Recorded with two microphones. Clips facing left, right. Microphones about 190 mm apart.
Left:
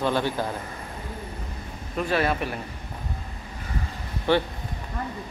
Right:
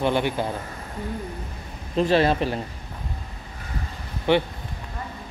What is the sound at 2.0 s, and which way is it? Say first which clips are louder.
Speech: right 5 dB; 30° right (ahead or behind).